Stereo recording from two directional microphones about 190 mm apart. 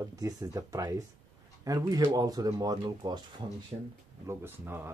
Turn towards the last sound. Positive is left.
turn(degrees=-10)  # may be behind; listen again after turning